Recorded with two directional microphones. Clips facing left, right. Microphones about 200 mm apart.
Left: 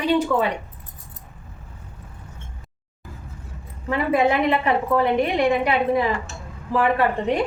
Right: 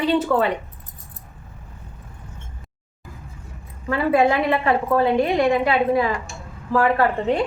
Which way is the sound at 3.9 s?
20° left (ahead or behind).